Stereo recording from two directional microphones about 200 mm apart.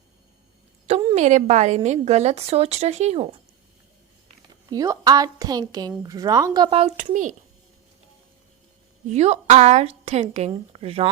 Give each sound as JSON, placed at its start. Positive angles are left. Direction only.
{"t": 1.1, "sound": "a woman's voice", "side_deg": -35}
{"t": 4.7, "sound": "speech", "side_deg": -20}
{"t": 9.0, "sound": "a woman's voice", "side_deg": -35}